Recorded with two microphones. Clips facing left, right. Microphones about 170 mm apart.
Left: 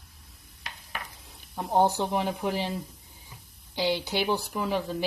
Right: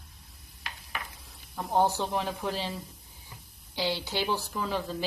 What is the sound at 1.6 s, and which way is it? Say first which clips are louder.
Speech: left 2 dB; 20° left (ahead or behind).